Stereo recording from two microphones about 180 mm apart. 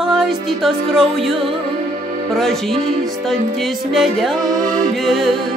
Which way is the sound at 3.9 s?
Centre (ahead or behind).